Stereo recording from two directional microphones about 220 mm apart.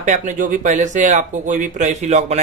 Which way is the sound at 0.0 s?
35° right (ahead or behind).